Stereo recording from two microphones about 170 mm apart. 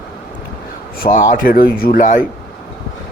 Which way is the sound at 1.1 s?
55° left (ahead or behind).